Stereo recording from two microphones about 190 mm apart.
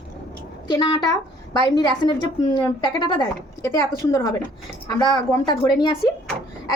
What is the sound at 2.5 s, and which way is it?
A woman's voice, 25° left (ahead or behind).